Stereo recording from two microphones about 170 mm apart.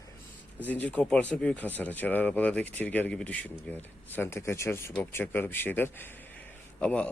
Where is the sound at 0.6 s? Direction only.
10° left (ahead or behind).